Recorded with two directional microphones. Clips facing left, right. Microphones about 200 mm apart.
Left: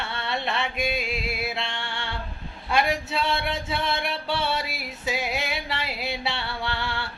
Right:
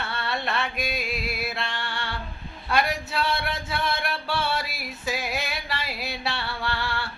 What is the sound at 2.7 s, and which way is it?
Speech, 25° left (ahead or behind).